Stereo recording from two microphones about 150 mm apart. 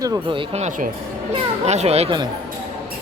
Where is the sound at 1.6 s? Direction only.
45° right (ahead or behind).